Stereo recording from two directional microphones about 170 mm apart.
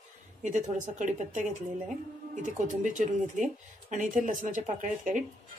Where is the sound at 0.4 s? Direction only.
45° right (ahead or behind).